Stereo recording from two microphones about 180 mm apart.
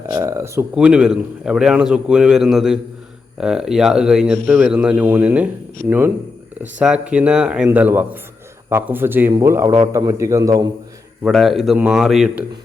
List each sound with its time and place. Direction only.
0.2 s speech: 15° right (ahead or behind)
0.8 s a man's voice: 5° right (ahead or behind)
6.6 s a man's voice: 5° right (ahead or behind)
11.2 s a man's voice: centre (ahead or behind)